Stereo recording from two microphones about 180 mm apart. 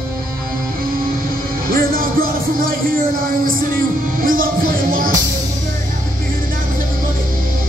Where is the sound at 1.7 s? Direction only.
55° right (ahead or behind).